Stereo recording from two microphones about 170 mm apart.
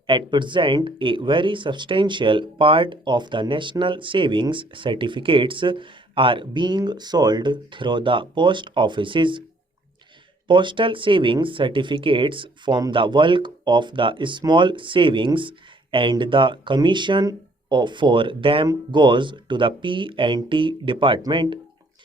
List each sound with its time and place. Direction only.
0.1 s speech: 25° right (ahead or behind)
10.5 s speech: 30° right (ahead or behind)